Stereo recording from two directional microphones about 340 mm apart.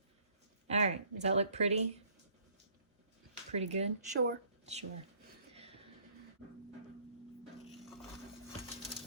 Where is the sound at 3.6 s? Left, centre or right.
Centre.